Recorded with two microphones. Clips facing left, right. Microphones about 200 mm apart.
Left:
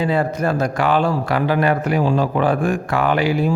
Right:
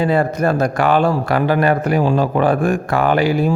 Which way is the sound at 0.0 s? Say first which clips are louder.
Right 3 dB; 50° right (ahead or behind).